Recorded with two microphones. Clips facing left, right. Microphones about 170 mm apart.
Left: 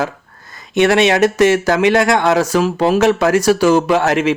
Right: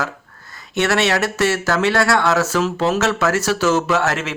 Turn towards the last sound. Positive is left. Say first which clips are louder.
# left 6 dB
turn(degrees=15)  # may be behind; listen again after turning